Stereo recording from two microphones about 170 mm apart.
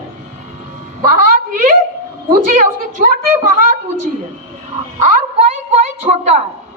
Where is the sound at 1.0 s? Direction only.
50° right (ahead or behind).